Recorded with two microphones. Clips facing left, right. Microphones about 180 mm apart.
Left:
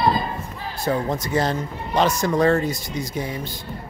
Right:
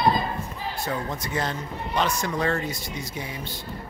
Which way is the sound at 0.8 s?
45° left (ahead or behind).